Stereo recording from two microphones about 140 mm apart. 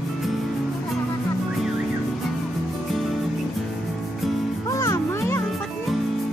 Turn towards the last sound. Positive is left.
turn(degrees=20)  # may be behind; listen again after turning